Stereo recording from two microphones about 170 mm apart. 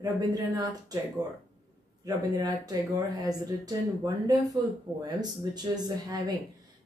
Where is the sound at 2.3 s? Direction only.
25° right (ahead or behind).